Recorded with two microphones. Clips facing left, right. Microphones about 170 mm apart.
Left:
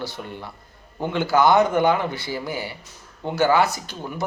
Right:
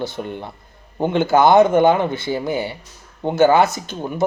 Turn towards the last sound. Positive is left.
turn(degrees=-20)  # may be behind; listen again after turning